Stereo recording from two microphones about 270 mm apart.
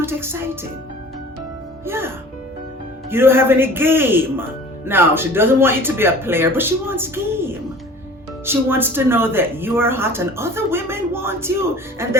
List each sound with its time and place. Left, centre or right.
0.0 s speech: centre
1.8 s speech: centre
3.1 s speech: centre